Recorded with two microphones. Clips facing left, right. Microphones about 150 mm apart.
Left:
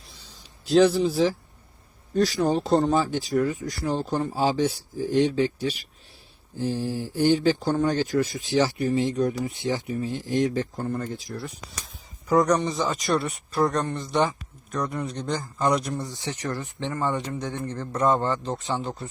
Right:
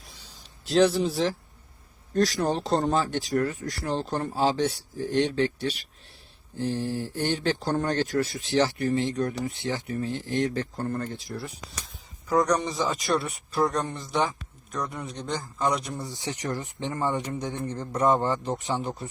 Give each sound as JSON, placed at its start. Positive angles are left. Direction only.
{"t": 0.6, "sound": "speech", "side_deg": 0}
{"t": 9.6, "sound": "speech", "side_deg": 20}
{"t": 10.8, "sound": "speech", "side_deg": 0}
{"t": 16.0, "sound": "speech", "side_deg": -15}